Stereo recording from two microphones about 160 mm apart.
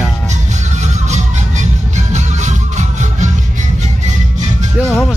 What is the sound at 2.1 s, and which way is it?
Music, 45° right (ahead or behind).